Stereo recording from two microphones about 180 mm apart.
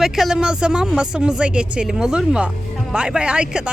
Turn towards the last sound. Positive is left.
turn(degrees=-5)  # may be behind; listen again after turning